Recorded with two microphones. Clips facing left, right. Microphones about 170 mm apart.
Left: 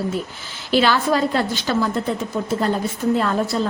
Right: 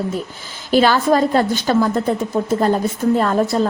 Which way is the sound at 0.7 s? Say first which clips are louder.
Right 4 dB; 45° right (ahead or behind).